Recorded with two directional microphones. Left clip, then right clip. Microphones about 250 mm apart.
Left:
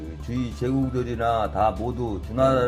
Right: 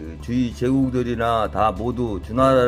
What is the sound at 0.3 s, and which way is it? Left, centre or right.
Speech, right.